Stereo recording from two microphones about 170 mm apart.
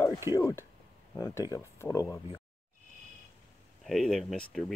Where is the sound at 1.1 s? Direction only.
20° left (ahead or behind).